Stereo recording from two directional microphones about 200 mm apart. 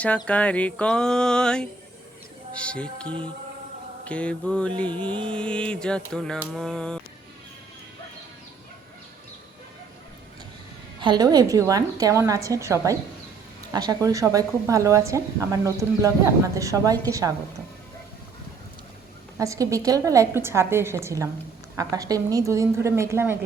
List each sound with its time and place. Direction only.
0.3 s a sound: 5° left (ahead or behind)
11.0 s speech: 20° right (ahead or behind)
19.4 s speech: 15° right (ahead or behind)